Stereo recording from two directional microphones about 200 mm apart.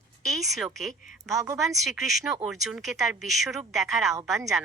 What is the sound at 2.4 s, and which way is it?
Speech, centre (ahead or behind).